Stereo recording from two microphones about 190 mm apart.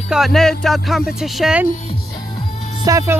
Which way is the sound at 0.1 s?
Centre (ahead or behind).